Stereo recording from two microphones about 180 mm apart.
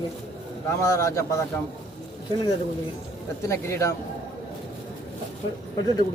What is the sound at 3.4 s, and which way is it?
Speech, 15° left (ahead or behind).